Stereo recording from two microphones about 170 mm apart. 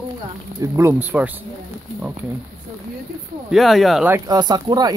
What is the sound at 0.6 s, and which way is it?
Speech, 15° right (ahead or behind).